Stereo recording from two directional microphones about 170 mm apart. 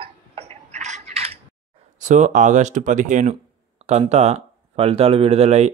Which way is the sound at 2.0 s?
45° right (ahead or behind).